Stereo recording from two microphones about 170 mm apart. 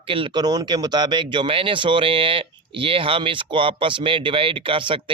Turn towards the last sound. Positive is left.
turn(degrees=-30)  # may be behind; listen again after turning